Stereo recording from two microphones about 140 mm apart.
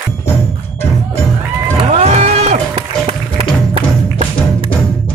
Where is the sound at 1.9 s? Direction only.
50° right (ahead or behind).